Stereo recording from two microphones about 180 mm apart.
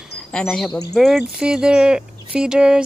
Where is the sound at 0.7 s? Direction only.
20° left (ahead or behind).